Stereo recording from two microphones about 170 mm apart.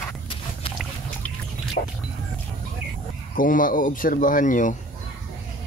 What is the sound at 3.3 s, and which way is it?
A man's voice, 55° left (ahead or behind).